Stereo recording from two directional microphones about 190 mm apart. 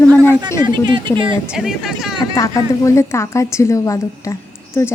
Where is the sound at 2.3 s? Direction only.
15° left (ahead or behind).